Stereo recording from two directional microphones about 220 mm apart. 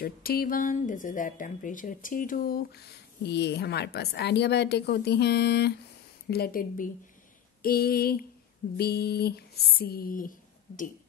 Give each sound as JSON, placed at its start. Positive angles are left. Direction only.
{"t": 0.0, "sound": "speech", "side_deg": 45}